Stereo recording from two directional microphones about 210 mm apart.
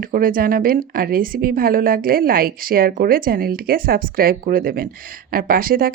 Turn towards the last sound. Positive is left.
turn(degrees=-45)  # may be behind; listen again after turning